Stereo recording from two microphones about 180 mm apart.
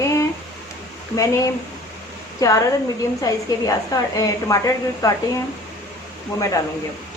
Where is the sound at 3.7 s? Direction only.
20° left (ahead or behind).